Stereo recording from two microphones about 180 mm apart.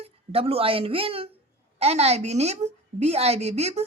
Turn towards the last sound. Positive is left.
turn(degrees=-35)  # may be behind; listen again after turning